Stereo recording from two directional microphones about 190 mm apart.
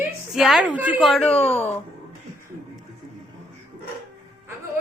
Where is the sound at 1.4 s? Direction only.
35° left (ahead or behind).